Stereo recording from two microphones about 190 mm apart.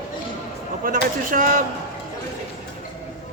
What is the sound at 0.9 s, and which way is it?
Speech, 45° right (ahead or behind).